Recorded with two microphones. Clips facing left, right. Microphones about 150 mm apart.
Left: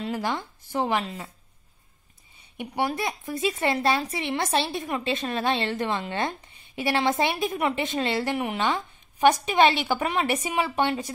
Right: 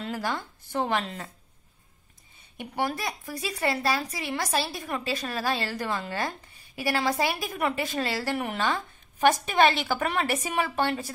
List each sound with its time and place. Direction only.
0.0 s speech: 15° left (ahead or behind)
2.5 s speech: 15° left (ahead or behind)